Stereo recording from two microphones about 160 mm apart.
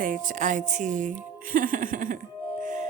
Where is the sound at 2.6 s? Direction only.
50° right (ahead or behind).